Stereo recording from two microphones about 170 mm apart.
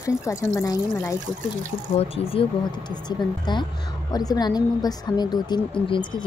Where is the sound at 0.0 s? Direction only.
20° left (ahead or behind).